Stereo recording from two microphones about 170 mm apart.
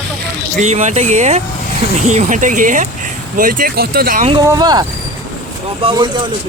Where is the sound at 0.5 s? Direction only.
45° right (ahead or behind); by 4.2 s 60° right (ahead or behind).